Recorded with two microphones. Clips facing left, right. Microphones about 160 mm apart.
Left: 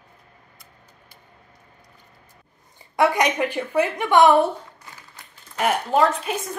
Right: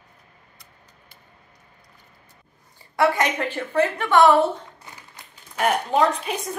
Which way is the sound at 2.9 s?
20° left (ahead or behind).